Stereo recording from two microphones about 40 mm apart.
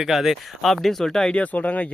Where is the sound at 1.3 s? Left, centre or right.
Left.